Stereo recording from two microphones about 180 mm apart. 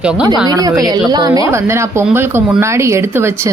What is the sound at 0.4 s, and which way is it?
A woman's voice, 20° right (ahead or behind).